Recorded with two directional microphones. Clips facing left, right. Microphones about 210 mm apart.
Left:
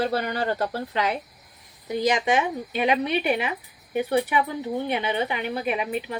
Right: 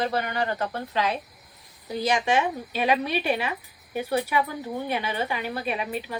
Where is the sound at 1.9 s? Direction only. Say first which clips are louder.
Left 2 dB; 20° left (ahead or behind).